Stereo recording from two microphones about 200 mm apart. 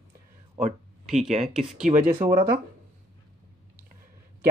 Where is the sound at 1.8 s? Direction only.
40° right (ahead or behind).